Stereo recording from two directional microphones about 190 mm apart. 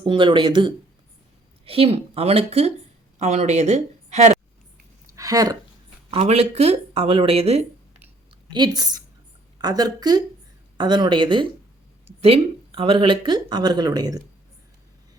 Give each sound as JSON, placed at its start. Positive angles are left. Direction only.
{"t": 0.0, "sound": "a woman's voice", "side_deg": -25}
{"t": 5.1, "sound": "a sound", "side_deg": -20}
{"t": 6.1, "sound": "speech", "side_deg": -30}
{"t": 8.5, "sound": "speech", "side_deg": -20}